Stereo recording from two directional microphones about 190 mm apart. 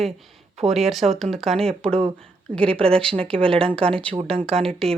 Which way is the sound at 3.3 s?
30° right (ahead or behind).